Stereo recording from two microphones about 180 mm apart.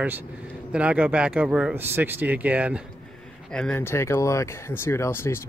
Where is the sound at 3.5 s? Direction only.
5° left (ahead or behind).